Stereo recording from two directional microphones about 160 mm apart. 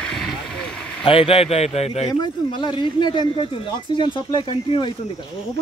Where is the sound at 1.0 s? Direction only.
35° left (ahead or behind).